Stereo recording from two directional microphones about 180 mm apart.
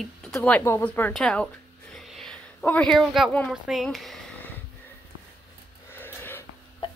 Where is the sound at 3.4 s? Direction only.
Centre (ahead or behind).